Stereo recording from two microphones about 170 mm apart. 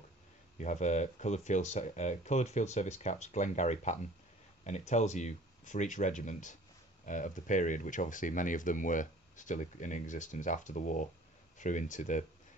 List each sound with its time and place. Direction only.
0.6 s speech: 45° left (ahead or behind)